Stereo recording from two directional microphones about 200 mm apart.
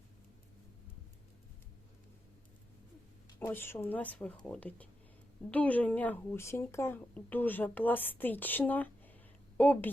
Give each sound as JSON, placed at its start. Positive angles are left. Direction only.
{"t": 3.4, "sound": "speech", "side_deg": 10}